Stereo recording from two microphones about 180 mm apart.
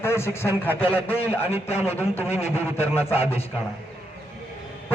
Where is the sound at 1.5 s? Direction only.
35° left (ahead or behind).